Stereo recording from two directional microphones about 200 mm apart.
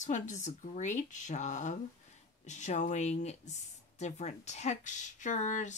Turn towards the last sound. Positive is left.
turn(degrees=35)  # may be behind; listen again after turning